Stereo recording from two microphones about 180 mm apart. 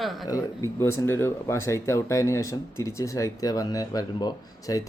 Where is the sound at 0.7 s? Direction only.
15° left (ahead or behind).